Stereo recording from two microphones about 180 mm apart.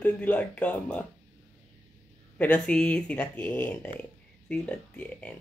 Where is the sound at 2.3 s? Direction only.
10° left (ahead or behind).